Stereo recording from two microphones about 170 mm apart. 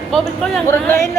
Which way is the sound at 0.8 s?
15° left (ahead or behind).